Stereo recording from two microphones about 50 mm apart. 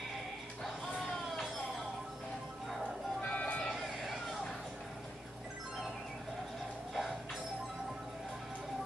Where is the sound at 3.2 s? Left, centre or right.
Left.